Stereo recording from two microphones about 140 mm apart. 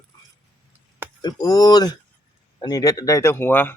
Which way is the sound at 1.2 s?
25° left (ahead or behind).